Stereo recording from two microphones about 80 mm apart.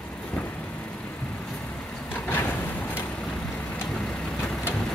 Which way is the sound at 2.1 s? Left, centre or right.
Left.